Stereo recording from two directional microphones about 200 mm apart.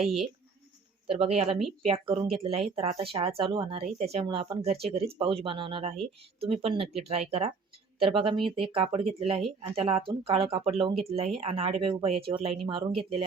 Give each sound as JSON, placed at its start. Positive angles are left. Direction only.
{"t": 0.0, "sound": "speech", "side_deg": 0}
{"t": 1.0, "sound": "speech", "side_deg": -30}